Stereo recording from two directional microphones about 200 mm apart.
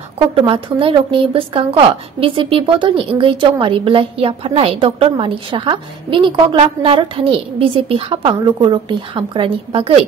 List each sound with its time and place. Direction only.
0.3 s a woman's voice: 25° right (ahead or behind)